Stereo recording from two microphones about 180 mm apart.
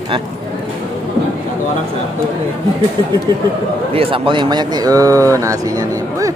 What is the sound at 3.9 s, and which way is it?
Speech, 30° right (ahead or behind).